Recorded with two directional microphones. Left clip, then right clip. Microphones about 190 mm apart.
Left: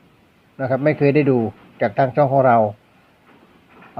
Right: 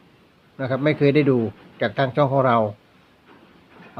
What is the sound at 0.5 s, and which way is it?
A man's voice, centre (ahead or behind).